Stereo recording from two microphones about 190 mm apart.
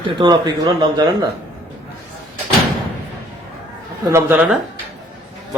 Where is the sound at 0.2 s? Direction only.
20° right (ahead or behind).